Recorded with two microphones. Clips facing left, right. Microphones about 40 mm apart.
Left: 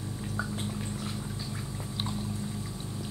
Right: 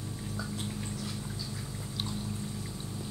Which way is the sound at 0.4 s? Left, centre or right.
Left.